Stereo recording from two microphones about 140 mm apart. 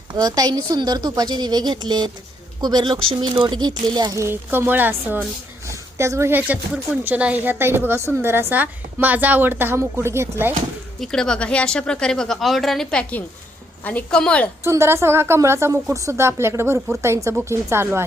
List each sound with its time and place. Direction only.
0.1 s a woman's voice: 30° right (ahead or behind)
11.0 s a woman's voice: 5° left (ahead or behind)
14.6 s a woman's voice: 20° right (ahead or behind)